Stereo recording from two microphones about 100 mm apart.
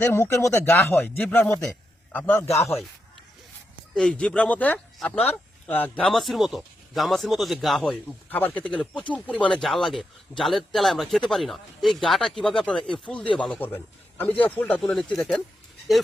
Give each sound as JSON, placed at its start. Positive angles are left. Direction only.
{"t": 0.0, "sound": "speech", "side_deg": 25}
{"t": 2.1, "sound": "speech", "side_deg": 20}
{"t": 3.9, "sound": "a man's voice", "side_deg": 10}
{"t": 6.0, "sound": "speech", "side_deg": 0}
{"t": 8.0, "sound": "a man's voice", "side_deg": 15}
{"t": 14.8, "sound": "speech", "side_deg": 0}